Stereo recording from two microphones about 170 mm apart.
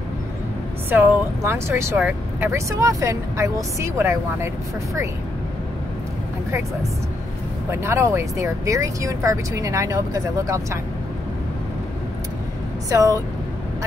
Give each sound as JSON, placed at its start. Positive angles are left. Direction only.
{"t": 0.8, "sound": "speech", "side_deg": -15}
{"t": 7.7, "sound": "speech", "side_deg": -15}
{"t": 12.9, "sound": "speech", "side_deg": -20}